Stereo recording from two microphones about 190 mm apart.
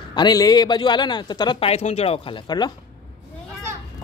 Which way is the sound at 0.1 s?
20° left (ahead or behind).